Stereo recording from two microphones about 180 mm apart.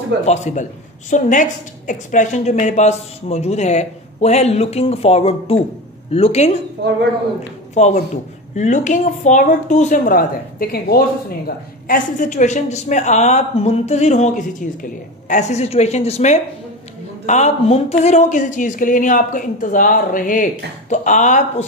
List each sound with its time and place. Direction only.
0.2 s speech: 40° left (ahead or behind)
7.7 s speech: 40° left (ahead or behind)